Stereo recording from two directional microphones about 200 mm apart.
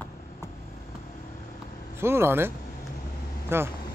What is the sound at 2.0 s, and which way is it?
Speech, 10° right (ahead or behind).